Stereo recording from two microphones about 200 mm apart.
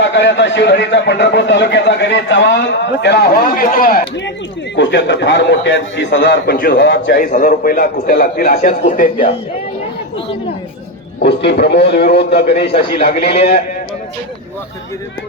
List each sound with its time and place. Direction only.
0.0 s a man's voice: 65° left (ahead or behind)
3.6 s a man's voice: 45° left (ahead or behind)
4.8 s a man's voice: 65° left (ahead or behind)
7.3 s a man's voice: 40° left (ahead or behind)
11.2 s a man's voice: 55° left (ahead or behind)